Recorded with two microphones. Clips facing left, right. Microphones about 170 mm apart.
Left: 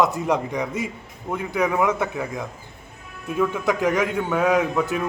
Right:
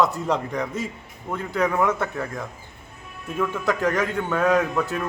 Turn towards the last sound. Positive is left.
turn(degrees=15)  # may be behind; listen again after turning